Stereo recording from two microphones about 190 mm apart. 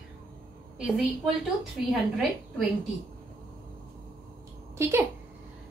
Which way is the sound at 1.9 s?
Centre (ahead or behind).